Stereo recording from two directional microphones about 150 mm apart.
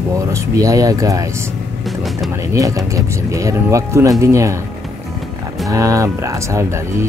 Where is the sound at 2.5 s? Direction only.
20° right (ahead or behind).